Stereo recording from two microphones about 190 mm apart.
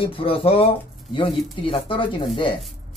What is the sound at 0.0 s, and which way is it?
Speech, 30° left (ahead or behind).